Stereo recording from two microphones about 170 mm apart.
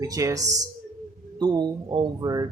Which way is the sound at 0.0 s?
20° right (ahead or behind).